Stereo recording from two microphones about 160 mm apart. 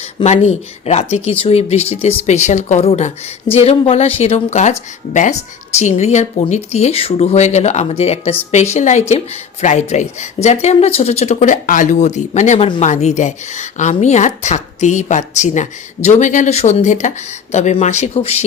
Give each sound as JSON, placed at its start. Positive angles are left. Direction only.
{"t": 0.3, "sound": "speech", "side_deg": 45}